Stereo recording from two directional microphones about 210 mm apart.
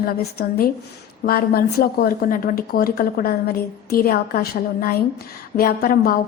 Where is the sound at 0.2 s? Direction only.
45° left (ahead or behind).